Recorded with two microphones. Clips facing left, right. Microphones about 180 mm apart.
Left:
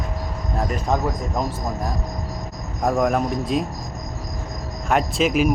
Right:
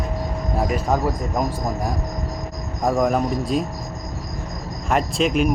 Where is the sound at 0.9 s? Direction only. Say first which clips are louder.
Right 1 dB; 5° right (ahead or behind).